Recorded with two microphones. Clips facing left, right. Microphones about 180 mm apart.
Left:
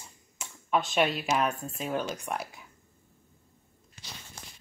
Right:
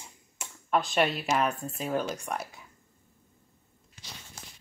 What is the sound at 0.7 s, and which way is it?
Speech, centre (ahead or behind).